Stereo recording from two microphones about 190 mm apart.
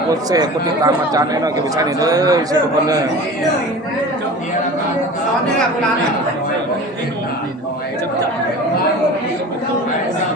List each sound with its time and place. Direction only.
0.1 s speech: 20° right (ahead or behind)